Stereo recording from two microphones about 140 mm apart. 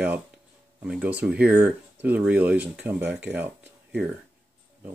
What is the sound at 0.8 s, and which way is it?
Speech, 10° right (ahead or behind).